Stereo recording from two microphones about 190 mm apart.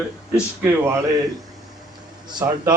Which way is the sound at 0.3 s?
10° right (ahead or behind).